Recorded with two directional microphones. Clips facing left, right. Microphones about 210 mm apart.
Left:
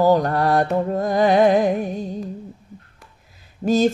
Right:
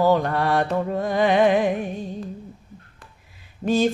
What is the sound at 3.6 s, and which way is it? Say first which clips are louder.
Speech: left 3 dB; 55° left (ahead or behind).